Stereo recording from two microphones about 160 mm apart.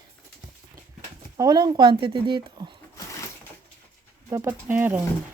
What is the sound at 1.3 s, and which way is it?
Speech, 25° right (ahead or behind).